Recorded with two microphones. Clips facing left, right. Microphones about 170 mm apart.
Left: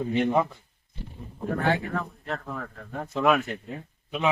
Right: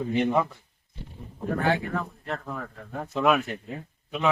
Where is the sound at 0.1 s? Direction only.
Centre (ahead or behind).